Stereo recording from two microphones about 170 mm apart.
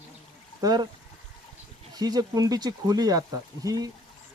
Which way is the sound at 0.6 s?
25° right (ahead or behind).